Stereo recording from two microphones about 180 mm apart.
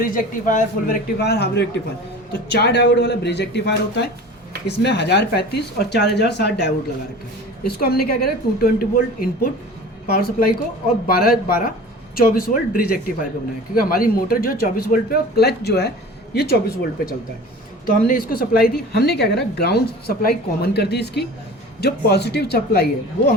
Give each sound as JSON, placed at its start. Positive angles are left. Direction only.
{"t": 0.0, "sound": "a woman's voice", "side_deg": 50}
{"t": 7.6, "sound": "a woman's voice", "side_deg": 55}
{"t": 11.0, "sound": "a woman's voice", "side_deg": 55}